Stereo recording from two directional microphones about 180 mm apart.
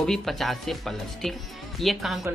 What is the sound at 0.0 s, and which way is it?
Speech, centre (ahead or behind).